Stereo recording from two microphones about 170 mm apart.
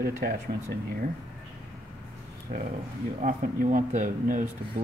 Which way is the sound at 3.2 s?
55° right (ahead or behind).